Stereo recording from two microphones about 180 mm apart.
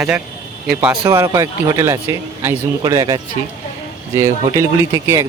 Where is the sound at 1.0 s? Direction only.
15° right (ahead or behind).